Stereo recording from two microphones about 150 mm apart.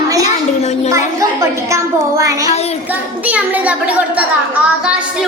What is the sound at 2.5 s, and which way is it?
Child singing, 45° left (ahead or behind).